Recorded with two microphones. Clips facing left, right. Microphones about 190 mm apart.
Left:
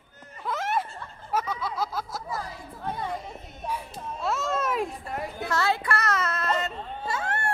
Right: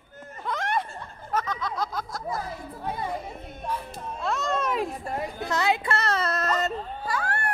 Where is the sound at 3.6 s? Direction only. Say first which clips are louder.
Right 1 dB; 5° left (ahead or behind).